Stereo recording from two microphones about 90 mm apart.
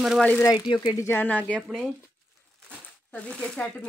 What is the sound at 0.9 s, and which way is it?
Speech, 30° left (ahead or behind).